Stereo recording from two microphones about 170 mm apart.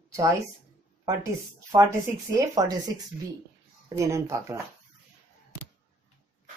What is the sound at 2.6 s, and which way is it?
Speech, 20° right (ahead or behind).